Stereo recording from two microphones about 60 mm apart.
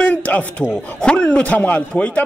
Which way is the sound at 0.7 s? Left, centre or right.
Centre.